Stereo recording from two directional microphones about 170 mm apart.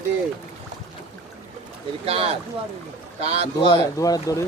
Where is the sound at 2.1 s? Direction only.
35° right (ahead or behind).